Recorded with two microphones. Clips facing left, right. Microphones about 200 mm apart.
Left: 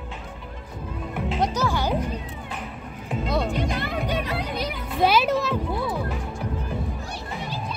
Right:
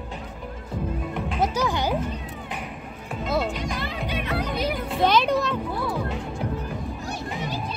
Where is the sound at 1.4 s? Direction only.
15° right (ahead or behind).